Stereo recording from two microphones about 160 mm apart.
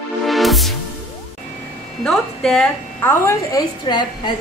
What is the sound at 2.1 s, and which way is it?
Speech, centre (ahead or behind).